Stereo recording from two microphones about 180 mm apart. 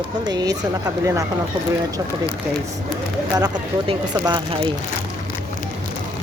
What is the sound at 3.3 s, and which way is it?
Speech, 20° right (ahead or behind).